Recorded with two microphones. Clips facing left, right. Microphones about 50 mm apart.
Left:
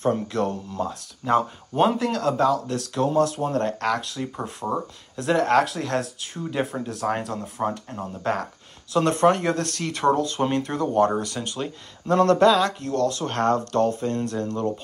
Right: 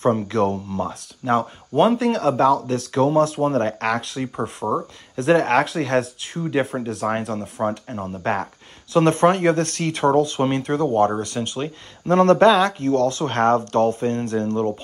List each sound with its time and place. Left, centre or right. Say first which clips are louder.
0.0 s speech: right 4 dB; right
1.3 s speech: right 2 dB; centre
2.2 s speech: right 3 dB; right
4.4 s speech: right 5 dB; centre
5.1 s speech: right 3 dB; right
5.8 s speech: right 5 dB; right
6.4 s speech: right 5 dB; right
7.7 s speech: right 3 dB; right
12.1 s speech: right 3 dB; right